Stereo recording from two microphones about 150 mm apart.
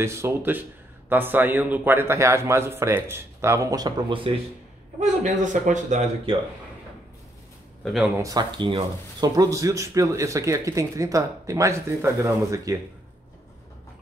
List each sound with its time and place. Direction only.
0.0 s a man's voice: 15° right (ahead or behind)
5.0 s a man's voice: 55° right (ahead or behind)
7.8 s speech: centre (ahead or behind)
8.2 s speech: 25° right (ahead or behind)
9.3 s speech: 20° right (ahead or behind)